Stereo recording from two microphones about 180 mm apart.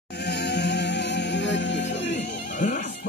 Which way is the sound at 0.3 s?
70° left (ahead or behind).